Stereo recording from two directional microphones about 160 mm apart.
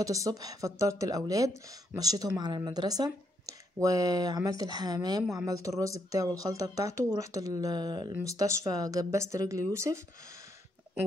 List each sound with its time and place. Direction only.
0.0 s speech: 20° right (ahead or behind)